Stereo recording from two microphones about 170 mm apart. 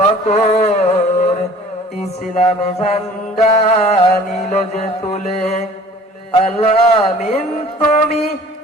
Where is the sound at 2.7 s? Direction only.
35° left (ahead or behind).